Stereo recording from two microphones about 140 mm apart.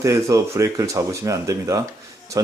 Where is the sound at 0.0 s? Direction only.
20° right (ahead or behind).